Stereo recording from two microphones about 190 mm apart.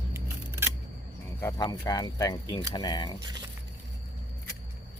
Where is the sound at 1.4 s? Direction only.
20° left (ahead or behind).